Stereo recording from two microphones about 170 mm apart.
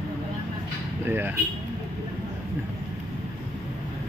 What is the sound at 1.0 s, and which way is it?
Speech, 10° right (ahead or behind).